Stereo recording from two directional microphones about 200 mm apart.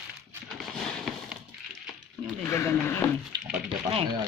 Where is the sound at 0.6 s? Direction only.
Centre (ahead or behind).